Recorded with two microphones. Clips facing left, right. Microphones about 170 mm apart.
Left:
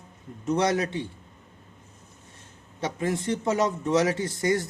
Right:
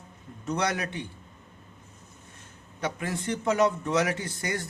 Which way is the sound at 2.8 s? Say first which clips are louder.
Left 4 dB; 20° left (ahead or behind).